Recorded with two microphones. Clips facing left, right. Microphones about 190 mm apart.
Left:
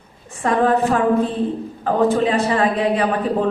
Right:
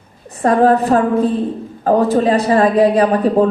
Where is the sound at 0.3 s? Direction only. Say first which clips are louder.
Right 5 dB; 40° right (ahead or behind).